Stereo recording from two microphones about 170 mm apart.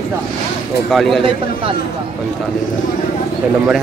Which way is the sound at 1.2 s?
30° right (ahead or behind).